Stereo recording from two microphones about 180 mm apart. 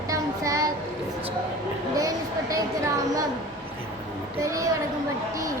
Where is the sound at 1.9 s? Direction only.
20° right (ahead or behind).